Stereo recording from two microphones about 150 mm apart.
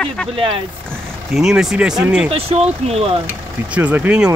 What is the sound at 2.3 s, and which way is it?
Speech, 45° right (ahead or behind).